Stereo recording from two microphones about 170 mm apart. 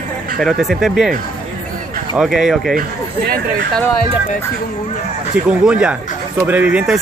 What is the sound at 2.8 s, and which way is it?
Speech, 60° right (ahead or behind).